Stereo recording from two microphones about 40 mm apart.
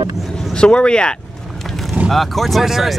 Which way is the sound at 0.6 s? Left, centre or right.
Left.